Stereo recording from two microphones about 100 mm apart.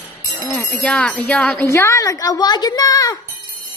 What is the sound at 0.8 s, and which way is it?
Jingle bell, 10° left (ahead or behind).